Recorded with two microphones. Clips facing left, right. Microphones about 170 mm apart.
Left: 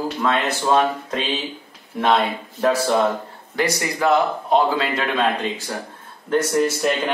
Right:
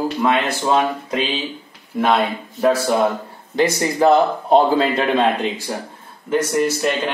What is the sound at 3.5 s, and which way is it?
A man's voice, 30° right (ahead or behind).